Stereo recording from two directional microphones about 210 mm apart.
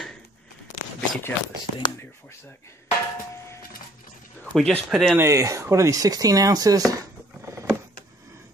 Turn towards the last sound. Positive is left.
turn(degrees=-15)  # may be behind; listen again after turning